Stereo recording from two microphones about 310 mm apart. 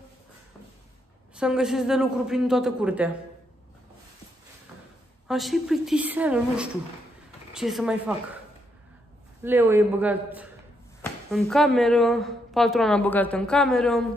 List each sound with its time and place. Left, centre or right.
1.3 s speech: centre
5.3 s speech: centre
9.4 s a man's voice: centre